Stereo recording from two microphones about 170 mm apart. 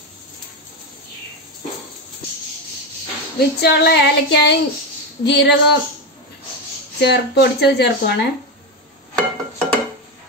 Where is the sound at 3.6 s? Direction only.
80° left.